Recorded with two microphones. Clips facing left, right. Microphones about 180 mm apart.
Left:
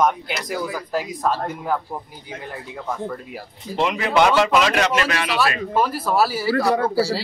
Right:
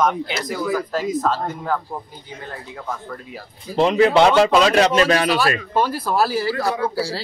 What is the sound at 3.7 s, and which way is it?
A man's voice, 35° right (ahead or behind).